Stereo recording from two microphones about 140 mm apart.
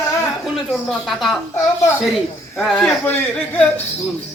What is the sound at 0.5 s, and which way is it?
Speech, centre (ahead or behind).